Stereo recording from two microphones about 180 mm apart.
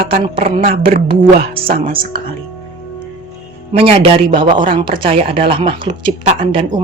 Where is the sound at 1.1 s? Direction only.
30° right (ahead or behind).